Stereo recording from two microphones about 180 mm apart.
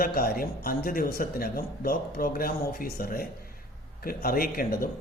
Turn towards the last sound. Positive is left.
turn(degrees=55)  # may be behind; listen again after turning